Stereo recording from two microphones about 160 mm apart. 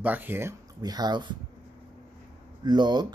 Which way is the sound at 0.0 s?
10° right (ahead or behind).